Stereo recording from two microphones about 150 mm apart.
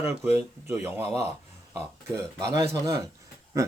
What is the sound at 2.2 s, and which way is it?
Speech, 20° right (ahead or behind).